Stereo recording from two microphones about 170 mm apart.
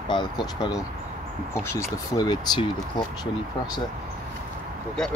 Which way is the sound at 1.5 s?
15° left (ahead or behind).